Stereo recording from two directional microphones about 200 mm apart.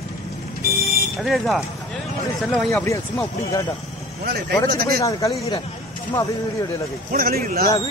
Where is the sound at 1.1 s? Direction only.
Centre (ahead or behind).